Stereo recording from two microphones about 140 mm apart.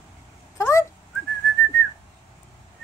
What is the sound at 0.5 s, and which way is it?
Fowl, 20° left (ahead or behind).